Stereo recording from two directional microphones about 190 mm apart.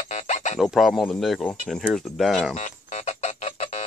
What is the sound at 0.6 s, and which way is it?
Speech, centre (ahead or behind).